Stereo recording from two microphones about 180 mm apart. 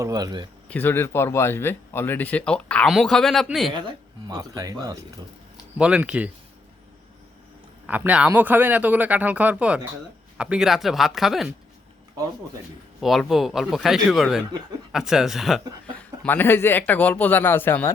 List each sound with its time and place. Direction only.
0.0 s speech: 20° right (ahead or behind)
0.7 s speech: 10° left (ahead or behind)
3.7 s speech: 25° right (ahead or behind)
5.7 s speech: 5° right (ahead or behind)
7.9 s speech: 10° right (ahead or behind)
13.0 s speech: centre (ahead or behind)